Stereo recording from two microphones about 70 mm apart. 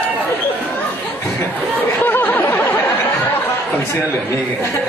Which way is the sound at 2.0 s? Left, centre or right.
Left.